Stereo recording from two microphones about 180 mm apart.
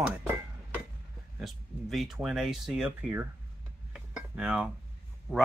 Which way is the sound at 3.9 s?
5° right (ahead or behind).